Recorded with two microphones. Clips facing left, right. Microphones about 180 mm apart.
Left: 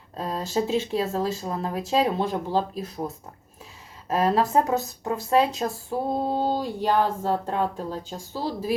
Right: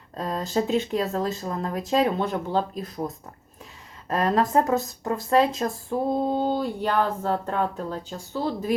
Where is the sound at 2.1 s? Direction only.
10° left (ahead or behind).